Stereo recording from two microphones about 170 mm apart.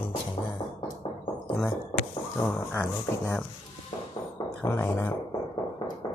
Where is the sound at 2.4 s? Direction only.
10° left (ahead or behind).